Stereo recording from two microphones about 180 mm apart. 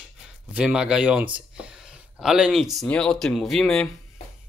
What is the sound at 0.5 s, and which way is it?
Speech, 5° right (ahead or behind).